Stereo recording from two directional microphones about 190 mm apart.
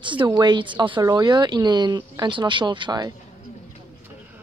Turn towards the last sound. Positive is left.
turn(degrees=-25)  # may be behind; listen again after turning